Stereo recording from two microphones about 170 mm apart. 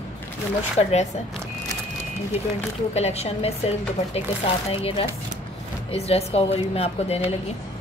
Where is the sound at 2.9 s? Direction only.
40° left (ahead or behind).